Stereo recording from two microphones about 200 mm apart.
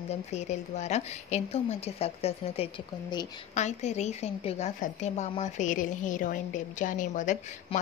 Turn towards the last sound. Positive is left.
turn(degrees=40)  # may be behind; listen again after turning